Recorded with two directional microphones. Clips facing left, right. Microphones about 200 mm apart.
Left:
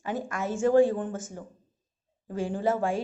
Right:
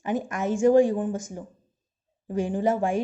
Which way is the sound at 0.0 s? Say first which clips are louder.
Right 4 dB; 20° right (ahead or behind).